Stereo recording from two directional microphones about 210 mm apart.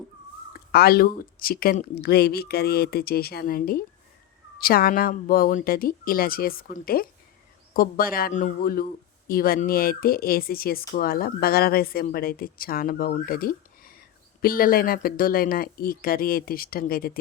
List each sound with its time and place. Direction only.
0.7 s speech: 45° left (ahead or behind)